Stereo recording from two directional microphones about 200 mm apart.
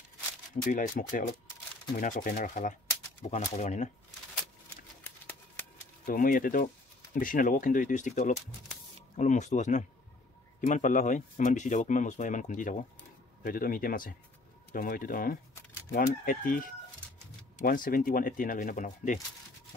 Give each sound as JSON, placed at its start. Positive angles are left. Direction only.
{"t": 0.7, "sound": "speech", "side_deg": 40}
{"t": 6.0, "sound": "speech", "side_deg": 45}